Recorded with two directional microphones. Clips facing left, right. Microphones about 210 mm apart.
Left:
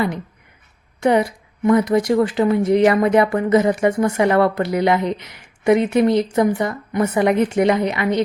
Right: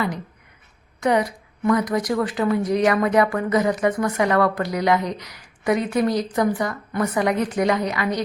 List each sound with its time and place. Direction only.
1.0 s speech: 25° left (ahead or behind)